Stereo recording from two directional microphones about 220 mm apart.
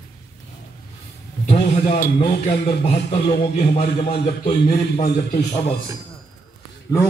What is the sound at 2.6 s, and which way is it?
A man's voice, 25° left (ahead or behind).